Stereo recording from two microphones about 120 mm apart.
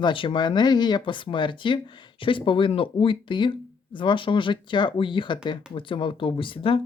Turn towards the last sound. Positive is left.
turn(degrees=45)  # may be behind; listen again after turning